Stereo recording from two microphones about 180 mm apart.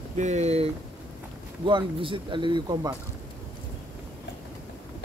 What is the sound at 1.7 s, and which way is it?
Speech, 25° right (ahead or behind).